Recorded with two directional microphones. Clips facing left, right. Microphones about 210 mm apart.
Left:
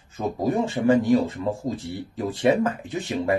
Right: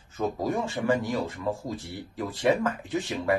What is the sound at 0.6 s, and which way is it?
Speech, 25° left (ahead or behind).